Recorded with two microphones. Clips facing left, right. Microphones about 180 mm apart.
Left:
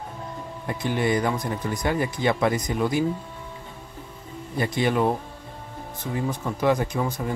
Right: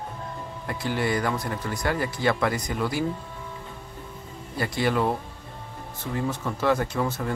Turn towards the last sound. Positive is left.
turn(degrees=15)  # may be behind; listen again after turning